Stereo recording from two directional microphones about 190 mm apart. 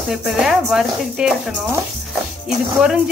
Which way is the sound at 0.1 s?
Centre (ahead or behind).